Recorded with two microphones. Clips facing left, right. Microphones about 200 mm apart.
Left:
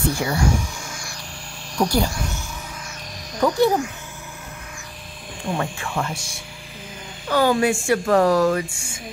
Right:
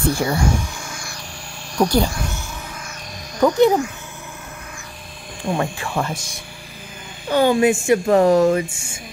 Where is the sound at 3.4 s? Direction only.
15° right (ahead or behind).